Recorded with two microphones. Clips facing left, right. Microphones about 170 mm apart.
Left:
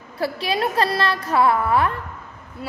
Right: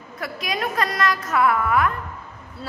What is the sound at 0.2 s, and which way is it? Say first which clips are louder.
A woman's voice: left 5 dB; 30° left (ahead or behind).